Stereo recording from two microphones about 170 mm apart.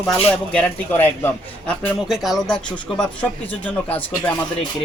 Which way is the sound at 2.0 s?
Centre (ahead or behind).